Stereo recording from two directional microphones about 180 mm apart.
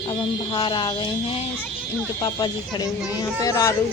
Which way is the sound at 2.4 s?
20° left (ahead or behind).